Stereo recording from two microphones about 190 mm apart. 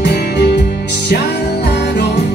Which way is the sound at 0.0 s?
60° left (ahead or behind).